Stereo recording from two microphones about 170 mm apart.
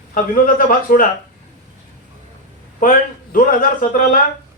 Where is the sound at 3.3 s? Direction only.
55° left (ahead or behind).